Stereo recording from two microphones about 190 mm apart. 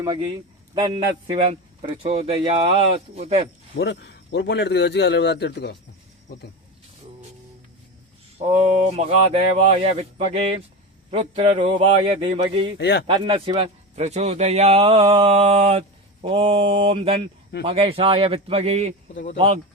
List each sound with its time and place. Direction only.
0.0 s a man's voice: 25° right (ahead or behind)
3.8 s a man's voice: 65° left (ahead or behind)
8.4 s a man's voice: 35° right (ahead or behind)
12.8 s a man's voice: 65° left (ahead or behind)
13.1 s a man's voice: 25° right (ahead or behind)